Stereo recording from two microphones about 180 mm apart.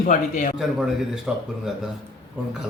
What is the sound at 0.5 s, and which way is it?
Speech, centre (ahead or behind).